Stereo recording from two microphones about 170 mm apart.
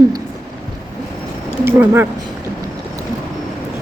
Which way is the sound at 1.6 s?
15° right (ahead or behind).